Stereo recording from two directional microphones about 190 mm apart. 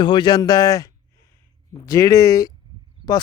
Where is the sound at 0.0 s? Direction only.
25° left (ahead or behind).